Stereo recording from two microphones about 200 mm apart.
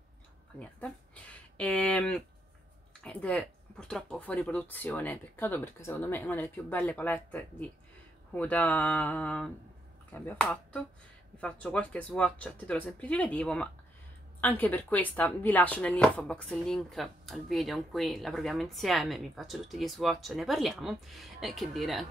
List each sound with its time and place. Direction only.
0.6 s speech: 5° left (ahead or behind)